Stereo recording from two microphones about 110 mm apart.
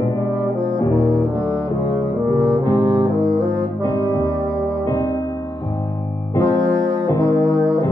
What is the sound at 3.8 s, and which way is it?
Brass instrument, 35° left (ahead or behind).